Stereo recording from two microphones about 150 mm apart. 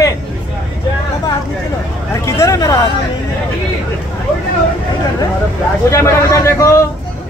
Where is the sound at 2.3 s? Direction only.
20° left (ahead or behind).